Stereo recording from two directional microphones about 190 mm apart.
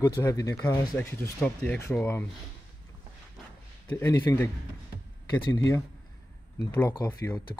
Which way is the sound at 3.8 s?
15° left (ahead or behind).